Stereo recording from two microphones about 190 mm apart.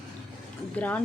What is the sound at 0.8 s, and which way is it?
Speech, 10° left (ahead or behind).